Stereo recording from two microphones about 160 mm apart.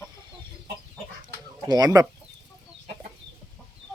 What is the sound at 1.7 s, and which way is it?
Speech, 25° right (ahead or behind).